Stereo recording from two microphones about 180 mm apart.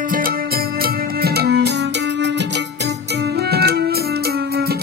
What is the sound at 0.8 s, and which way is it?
Music, 60° right (ahead or behind).